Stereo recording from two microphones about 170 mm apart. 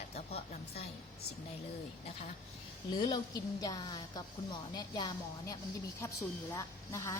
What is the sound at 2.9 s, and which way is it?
Speech, 25° left (ahead or behind).